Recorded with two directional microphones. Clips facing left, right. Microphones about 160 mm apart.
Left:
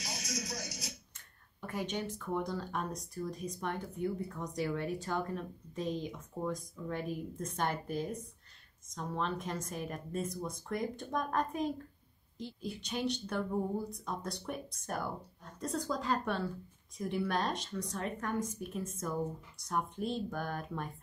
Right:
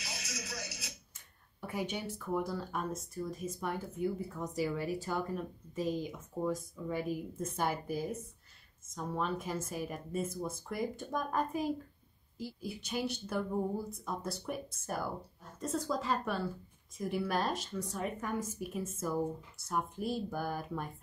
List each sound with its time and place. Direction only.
0.0 s music: 40° left (ahead or behind)
1.7 s speech: 10° right (ahead or behind)